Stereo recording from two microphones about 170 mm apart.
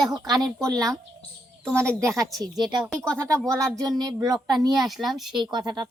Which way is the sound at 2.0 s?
20° right (ahead or behind).